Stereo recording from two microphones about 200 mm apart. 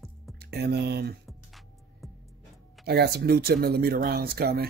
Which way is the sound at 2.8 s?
55° right (ahead or behind).